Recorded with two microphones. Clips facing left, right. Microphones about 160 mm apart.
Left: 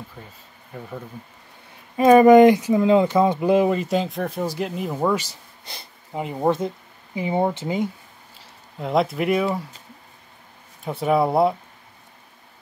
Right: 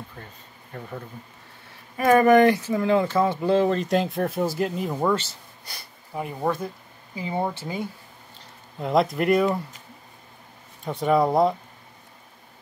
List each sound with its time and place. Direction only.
0.7 s speech: 5° left (ahead or behind)
2.0 s speech: 20° left (ahead or behind)
8.7 s speech: centre (ahead or behind)
10.8 s speech: 5° left (ahead or behind)